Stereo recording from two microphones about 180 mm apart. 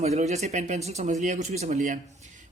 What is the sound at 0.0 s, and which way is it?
A man's voice, 40° right (ahead or behind).